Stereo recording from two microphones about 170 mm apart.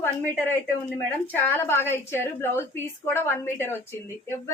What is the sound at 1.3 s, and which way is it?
A woman's voice, 15° left (ahead or behind).